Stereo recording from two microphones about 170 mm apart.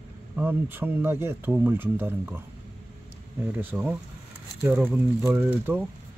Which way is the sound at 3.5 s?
10° right (ahead or behind).